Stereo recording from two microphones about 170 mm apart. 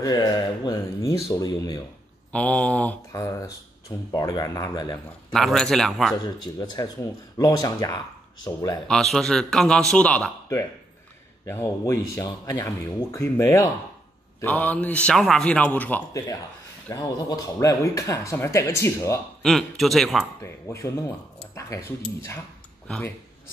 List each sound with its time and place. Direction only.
0.0 s speech: 25° left (ahead or behind)
2.3 s speech: 5° left (ahead or behind)
3.1 s speech: 20° left (ahead or behind)
5.3 s a man's voice: centre (ahead or behind)
6.2 s speech: 25° left (ahead or behind)
8.8 s a man's voice: centre (ahead or behind)
19.4 s a man's voice: centre (ahead or behind)
20.3 s speech: 15° left (ahead or behind)